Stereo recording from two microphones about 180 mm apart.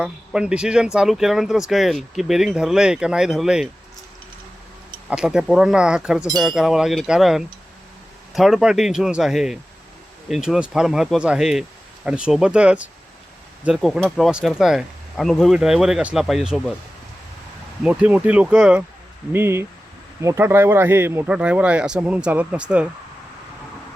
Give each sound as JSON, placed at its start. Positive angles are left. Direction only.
{"t": 0.0, "sound": "speech", "side_deg": -5}
{"t": 5.0, "sound": "speech", "side_deg": -5}
{"t": 17.8, "sound": "speech", "side_deg": -5}